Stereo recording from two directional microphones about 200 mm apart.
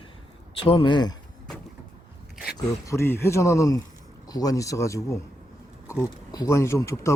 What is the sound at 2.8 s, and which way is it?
Speech, 15° left (ahead or behind).